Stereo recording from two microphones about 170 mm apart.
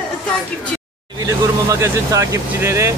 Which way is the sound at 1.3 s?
15° right (ahead or behind).